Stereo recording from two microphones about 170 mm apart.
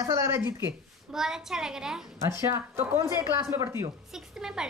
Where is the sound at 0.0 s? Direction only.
20° right (ahead or behind).